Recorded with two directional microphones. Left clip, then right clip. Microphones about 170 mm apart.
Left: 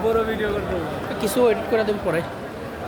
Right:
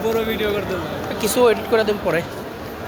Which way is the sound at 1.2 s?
5° left (ahead or behind).